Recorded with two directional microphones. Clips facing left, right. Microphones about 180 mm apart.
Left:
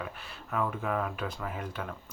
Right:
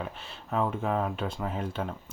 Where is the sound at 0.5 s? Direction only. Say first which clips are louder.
Right 3 dB; 25° right (ahead or behind).